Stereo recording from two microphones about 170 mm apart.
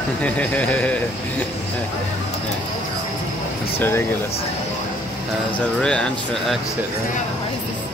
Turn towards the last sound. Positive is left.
turn(degrees=5)  # may be behind; listen again after turning